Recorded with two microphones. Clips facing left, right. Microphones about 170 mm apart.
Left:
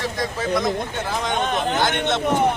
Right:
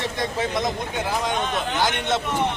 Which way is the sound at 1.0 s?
10° right (ahead or behind).